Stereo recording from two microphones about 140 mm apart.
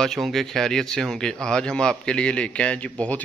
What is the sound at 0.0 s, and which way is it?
Speech, centre (ahead or behind).